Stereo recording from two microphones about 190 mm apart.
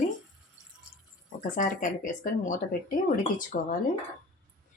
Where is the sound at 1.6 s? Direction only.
45° left (ahead or behind).